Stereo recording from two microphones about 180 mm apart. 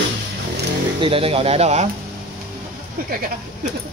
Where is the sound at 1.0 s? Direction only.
30° right (ahead or behind).